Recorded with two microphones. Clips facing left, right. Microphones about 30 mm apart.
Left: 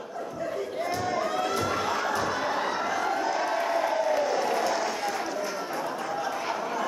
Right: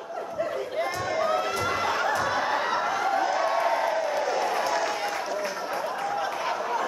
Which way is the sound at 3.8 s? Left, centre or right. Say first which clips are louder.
Even; centre.